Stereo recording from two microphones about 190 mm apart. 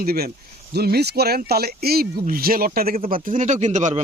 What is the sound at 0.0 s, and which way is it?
A man's voice, 50° right (ahead or behind).